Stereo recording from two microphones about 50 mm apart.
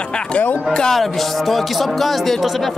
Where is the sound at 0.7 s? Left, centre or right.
Centre.